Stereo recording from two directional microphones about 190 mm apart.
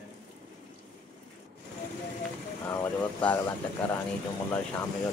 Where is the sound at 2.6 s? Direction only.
10° left (ahead or behind).